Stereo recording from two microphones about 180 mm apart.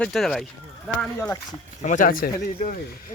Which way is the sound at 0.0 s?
5° left (ahead or behind).